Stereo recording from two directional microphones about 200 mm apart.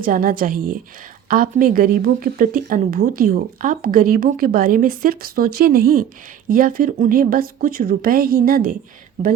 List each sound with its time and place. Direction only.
0.0 s speech: 45° right (ahead or behind)